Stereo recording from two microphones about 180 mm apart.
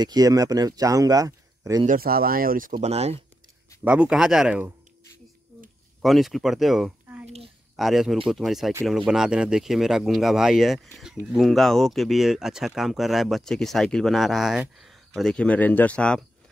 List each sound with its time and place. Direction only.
0.0 s speech: 20° right (ahead or behind)
1.9 s speech: 55° right (ahead or behind)
2.8 s speech: 35° right (ahead or behind)
3.8 s speech: 5° right (ahead or behind)
6.0 s speech: centre (ahead or behind)
7.2 s a sound: 35° right (ahead or behind)
7.7 s speech: centre (ahead or behind)